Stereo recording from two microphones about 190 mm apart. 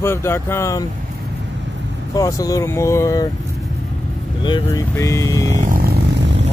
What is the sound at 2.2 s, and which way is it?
Speech, 20° left (ahead or behind).